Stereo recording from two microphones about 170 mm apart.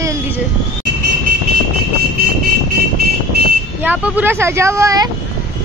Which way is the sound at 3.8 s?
10° right (ahead or behind).